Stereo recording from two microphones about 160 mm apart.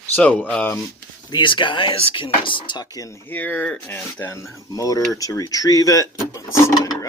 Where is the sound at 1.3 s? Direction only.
30° left (ahead or behind).